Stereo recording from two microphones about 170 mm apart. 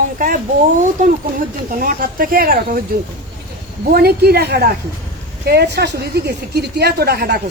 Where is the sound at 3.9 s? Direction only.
65° right (ahead or behind).